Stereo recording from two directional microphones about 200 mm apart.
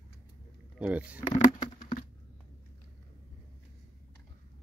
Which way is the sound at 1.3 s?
40° left (ahead or behind).